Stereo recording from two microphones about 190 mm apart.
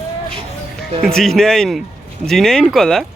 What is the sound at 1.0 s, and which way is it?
Speech, centre (ahead or behind).